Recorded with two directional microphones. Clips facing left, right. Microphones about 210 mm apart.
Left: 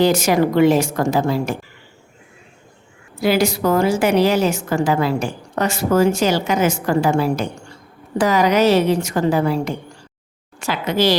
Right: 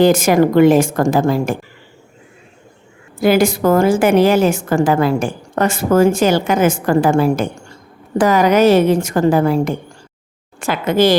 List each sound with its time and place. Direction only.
0.0 s a woman's voice: 50° right (ahead or behind)
3.2 s a woman's voice: 50° right (ahead or behind)